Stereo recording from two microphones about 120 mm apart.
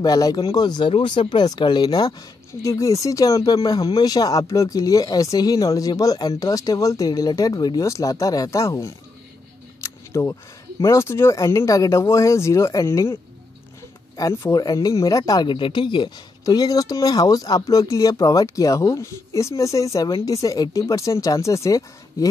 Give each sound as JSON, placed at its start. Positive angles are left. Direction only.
{"t": 0.0, "sound": "speech", "side_deg": 35}
{"t": 9.8, "sound": "camera", "side_deg": 25}
{"t": 10.8, "sound": "speech", "side_deg": 25}
{"t": 15.5, "sound": "speech", "side_deg": 45}